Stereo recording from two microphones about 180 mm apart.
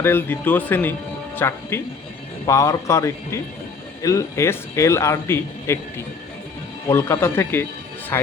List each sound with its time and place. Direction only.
0.0 s a man's voice: 10° left (ahead or behind)
6.8 s a man's voice: 15° left (ahead or behind)